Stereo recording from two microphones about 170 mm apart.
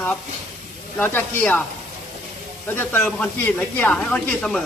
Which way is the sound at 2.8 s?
10° left (ahead or behind).